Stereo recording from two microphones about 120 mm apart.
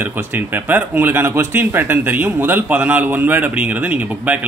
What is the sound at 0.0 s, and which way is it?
Speech, 15° right (ahead or behind).